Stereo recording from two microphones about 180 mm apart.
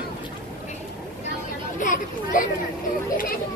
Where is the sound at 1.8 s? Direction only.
45° left (ahead or behind).